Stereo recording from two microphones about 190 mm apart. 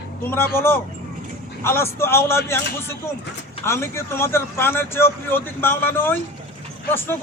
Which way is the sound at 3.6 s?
15° left (ahead or behind).